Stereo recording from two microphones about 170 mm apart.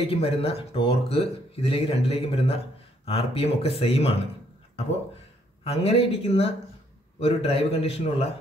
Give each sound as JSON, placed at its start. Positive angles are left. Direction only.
{"t": 0.0, "sound": "speech", "side_deg": 35}
{"t": 5.6, "sound": "speech", "side_deg": 35}